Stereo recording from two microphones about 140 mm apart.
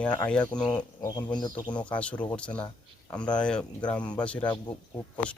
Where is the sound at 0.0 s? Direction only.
10° left (ahead or behind).